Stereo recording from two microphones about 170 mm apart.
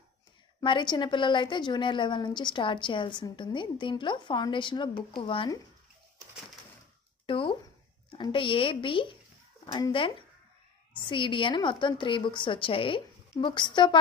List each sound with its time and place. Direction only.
0.6 s a woman's voice: 25° left (ahead or behind)
7.2 s a woman's voice: 30° left (ahead or behind)